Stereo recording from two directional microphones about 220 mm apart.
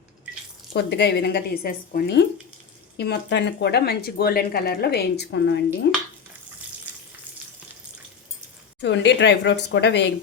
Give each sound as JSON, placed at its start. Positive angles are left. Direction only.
{"t": 0.7, "sound": "speech", "side_deg": 50}
{"t": 8.8, "sound": "speech", "side_deg": 55}